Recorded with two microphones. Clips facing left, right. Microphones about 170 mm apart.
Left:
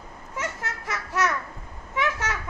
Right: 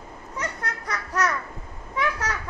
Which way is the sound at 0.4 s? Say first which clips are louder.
Even; 5° left (ahead or behind).